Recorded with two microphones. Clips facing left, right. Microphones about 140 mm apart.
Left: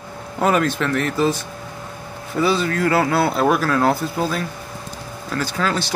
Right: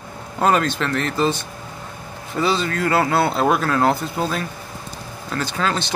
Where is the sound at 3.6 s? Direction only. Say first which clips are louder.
Even; centre (ahead or behind).